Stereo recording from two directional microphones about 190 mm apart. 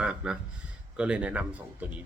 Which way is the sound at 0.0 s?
5° right (ahead or behind).